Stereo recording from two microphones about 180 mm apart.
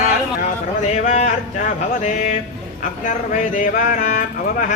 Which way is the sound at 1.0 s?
40° left (ahead or behind).